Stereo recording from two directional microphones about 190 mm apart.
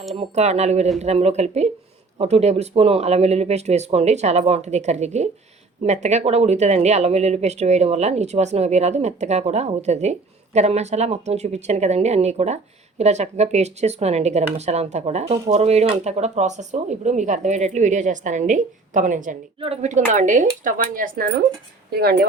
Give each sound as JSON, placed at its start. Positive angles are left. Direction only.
{"t": 0.2, "sound": "speech", "side_deg": -35}
{"t": 19.5, "sound": "speech", "side_deg": -30}